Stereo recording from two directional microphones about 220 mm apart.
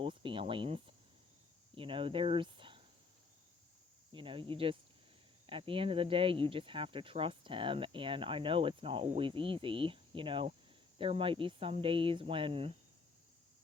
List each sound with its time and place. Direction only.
0.0 s a sound: 25° right (ahead or behind)
1.7 s speech: 25° right (ahead or behind)
4.1 s speech: 25° right (ahead or behind)